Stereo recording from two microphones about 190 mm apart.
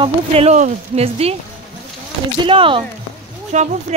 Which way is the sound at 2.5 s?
25° right (ahead or behind).